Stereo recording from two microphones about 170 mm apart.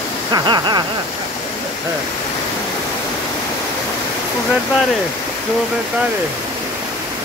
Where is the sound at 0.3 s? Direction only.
25° right (ahead or behind).